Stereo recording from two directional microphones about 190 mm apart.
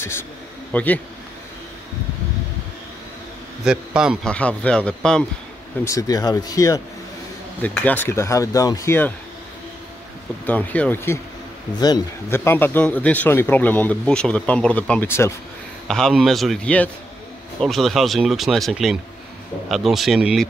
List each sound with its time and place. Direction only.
0.7 s speech: 10° left (ahead or behind)
3.6 s a man's voice: 5° right (ahead or behind)
5.9 s speech: 20° left (ahead or behind)
10.4 s speech: 10° left (ahead or behind)
15.9 s a man's voice: centre (ahead or behind)